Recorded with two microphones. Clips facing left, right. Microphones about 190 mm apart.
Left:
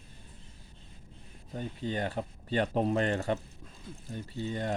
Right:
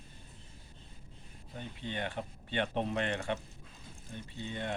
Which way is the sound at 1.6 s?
40° left (ahead or behind).